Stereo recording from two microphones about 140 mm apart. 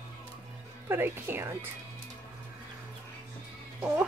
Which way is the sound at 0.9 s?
15° right (ahead or behind).